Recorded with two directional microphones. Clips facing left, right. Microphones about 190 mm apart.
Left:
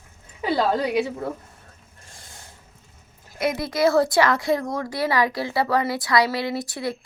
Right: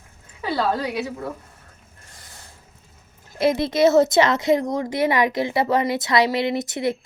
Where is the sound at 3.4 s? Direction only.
25° right (ahead or behind).